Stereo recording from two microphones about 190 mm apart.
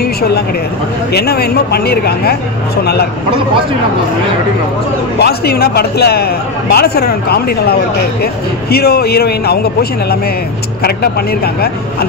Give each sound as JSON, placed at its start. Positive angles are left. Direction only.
{"t": 1.1, "sound": "a man's voice", "side_deg": 55}
{"t": 5.2, "sound": "a man's voice", "side_deg": 55}